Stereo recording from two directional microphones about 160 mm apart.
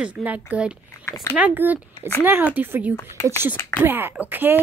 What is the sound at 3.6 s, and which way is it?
Speech, 15° left (ahead or behind).